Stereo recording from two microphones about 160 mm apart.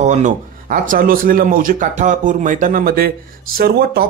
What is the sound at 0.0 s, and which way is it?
Speech, 50° right (ahead or behind).